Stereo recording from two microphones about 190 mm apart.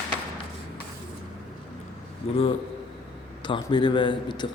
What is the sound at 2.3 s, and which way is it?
A man's voice, 30° left (ahead or behind).